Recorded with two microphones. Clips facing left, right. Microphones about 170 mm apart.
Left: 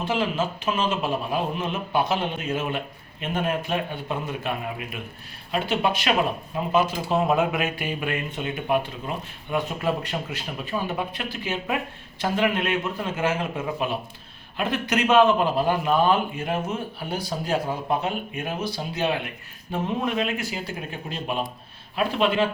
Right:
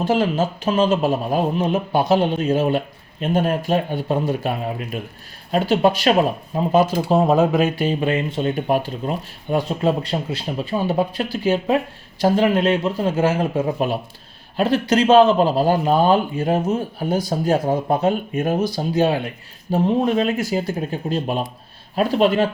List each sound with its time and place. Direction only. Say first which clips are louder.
0.0 s speech: right 6 dB; 40° right (ahead or behind)